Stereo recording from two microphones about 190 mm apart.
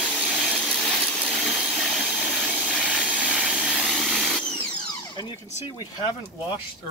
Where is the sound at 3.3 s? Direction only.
5° right (ahead or behind).